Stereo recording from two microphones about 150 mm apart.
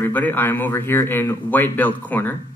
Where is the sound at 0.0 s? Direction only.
10° left (ahead or behind).